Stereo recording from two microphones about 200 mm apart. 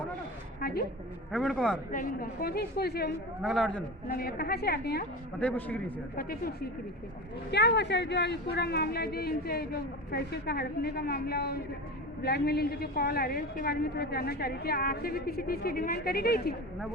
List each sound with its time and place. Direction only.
0.6 s a woman's voice: 50° left (ahead or behind)
1.3 s a man's voice: centre (ahead or behind)
1.9 s a woman's voice: 45° left (ahead or behind)
3.4 s a man's voice: centre (ahead or behind)
4.1 s a woman's voice: 50° left (ahead or behind)
5.4 s a man's voice: 10° left (ahead or behind)
6.1 s a woman's voice: 50° left (ahead or behind)